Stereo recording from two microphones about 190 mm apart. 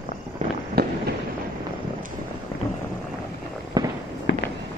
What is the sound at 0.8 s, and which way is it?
Fireworks, 55° right (ahead or behind).